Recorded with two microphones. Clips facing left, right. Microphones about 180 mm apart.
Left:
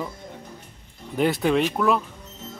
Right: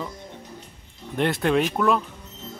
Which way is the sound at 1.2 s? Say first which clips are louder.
Left 1 dB; centre (ahead or behind).